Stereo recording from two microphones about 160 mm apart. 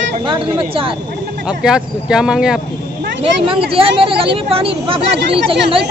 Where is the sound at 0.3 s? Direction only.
35° right (ahead or behind).